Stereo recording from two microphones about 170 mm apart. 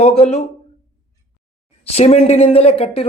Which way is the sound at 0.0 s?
40° left (ahead or behind).